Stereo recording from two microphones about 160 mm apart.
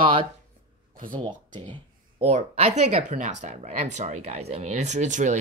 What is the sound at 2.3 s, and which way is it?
Speech, 40° right (ahead or behind).